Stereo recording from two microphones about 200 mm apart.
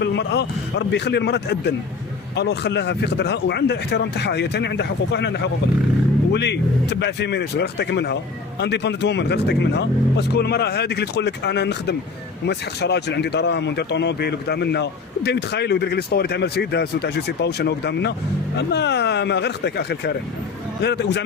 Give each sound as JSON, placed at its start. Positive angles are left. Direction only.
{"t": 0.0, "sound": "speech", "side_deg": 60}